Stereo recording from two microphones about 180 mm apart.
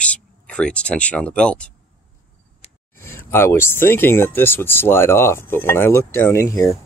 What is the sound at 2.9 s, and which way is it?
Speech, 15° left (ahead or behind).